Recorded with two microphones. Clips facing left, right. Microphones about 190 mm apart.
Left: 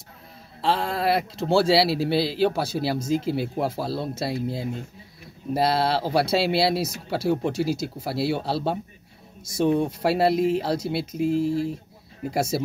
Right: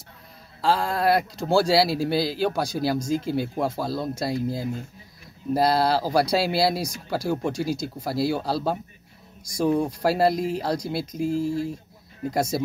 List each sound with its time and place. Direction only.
0.6 s speech: centre (ahead or behind)
3.7 s speech: 30° left (ahead or behind)
4.1 s speech: 5° left (ahead or behind)
8.4 s speech: 30° left (ahead or behind)
9.8 s speech: centre (ahead or behind)